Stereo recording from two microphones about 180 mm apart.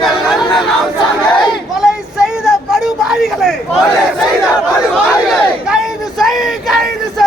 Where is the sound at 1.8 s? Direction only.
Centre (ahead or behind).